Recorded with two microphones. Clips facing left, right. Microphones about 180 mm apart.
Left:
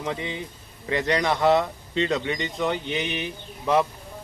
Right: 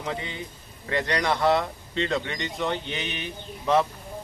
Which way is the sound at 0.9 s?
20° left (ahead or behind).